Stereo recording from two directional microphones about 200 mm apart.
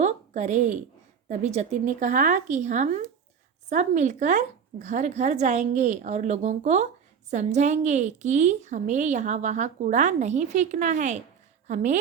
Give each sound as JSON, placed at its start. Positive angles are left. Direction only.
{"t": 0.0, "sound": "a woman's voice", "side_deg": -35}